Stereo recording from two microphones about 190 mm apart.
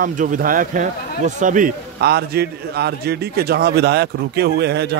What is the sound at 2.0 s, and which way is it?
A man's voice, 60° right (ahead or behind).